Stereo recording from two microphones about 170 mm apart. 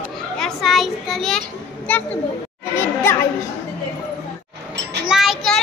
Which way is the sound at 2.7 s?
15° left (ahead or behind).